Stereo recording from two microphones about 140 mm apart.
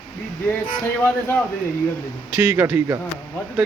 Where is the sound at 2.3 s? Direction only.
15° right (ahead or behind).